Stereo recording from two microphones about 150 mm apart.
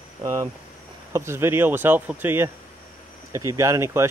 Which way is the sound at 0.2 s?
20° right (ahead or behind).